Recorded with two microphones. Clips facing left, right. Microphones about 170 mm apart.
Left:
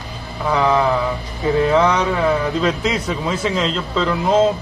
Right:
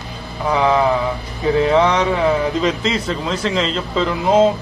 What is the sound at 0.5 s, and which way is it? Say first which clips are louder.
A man's voice: right 1 dB; 5° right (ahead or behind).